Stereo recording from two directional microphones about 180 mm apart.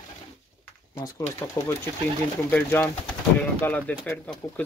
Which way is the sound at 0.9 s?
15° left (ahead or behind).